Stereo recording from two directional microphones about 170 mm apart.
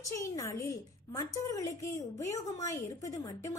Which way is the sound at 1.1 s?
15° left (ahead or behind).